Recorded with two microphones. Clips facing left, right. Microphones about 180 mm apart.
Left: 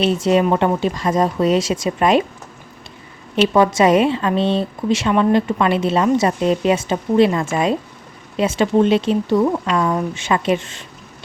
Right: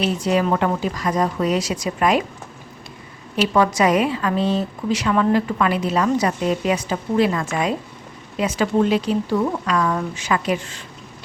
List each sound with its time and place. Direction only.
0.0 s speech: 25° left (ahead or behind)
3.3 s speech: 25° left (ahead or behind)